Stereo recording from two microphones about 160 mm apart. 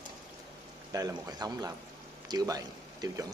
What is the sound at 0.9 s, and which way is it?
A man's voice, 20° right (ahead or behind).